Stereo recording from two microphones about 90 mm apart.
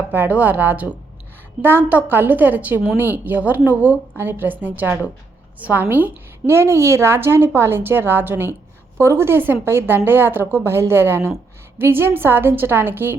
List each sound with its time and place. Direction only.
0.1 s a woman's voice: 20° right (ahead or behind)